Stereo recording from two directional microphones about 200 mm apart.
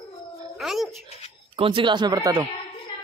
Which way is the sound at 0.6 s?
Centre (ahead or behind).